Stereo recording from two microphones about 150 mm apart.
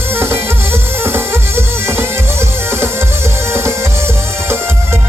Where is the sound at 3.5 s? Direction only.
15° right (ahead or behind).